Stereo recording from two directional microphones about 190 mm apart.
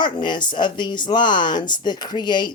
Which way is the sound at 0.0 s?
25° left (ahead or behind).